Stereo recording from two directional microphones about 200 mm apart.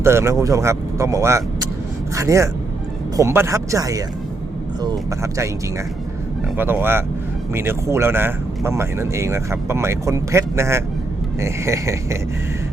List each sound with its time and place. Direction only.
0.0 s speech: 15° right (ahead or behind)
6.6 s speech: 10° right (ahead or behind)